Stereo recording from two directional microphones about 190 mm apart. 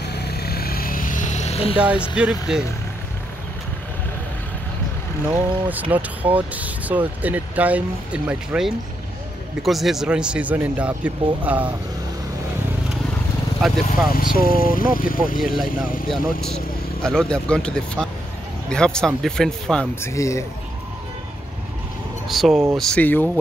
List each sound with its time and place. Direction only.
0.1 s vehicle: 60° left (ahead or behind); by 1.8 s 30° left (ahead or behind)
1.8 s speech: 5° right (ahead or behind)
5.3 s speech: 10° right (ahead or behind)
13.6 s speech: centre (ahead or behind)
14.1 s speech: 50° left (ahead or behind)
16.1 s speech: 5° left (ahead or behind)
22.3 s speech: centre (ahead or behind)